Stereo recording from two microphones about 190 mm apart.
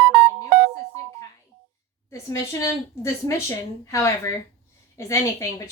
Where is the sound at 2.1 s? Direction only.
15° left (ahead or behind).